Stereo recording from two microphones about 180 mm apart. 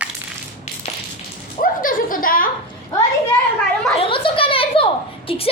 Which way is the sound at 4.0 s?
30° left (ahead or behind).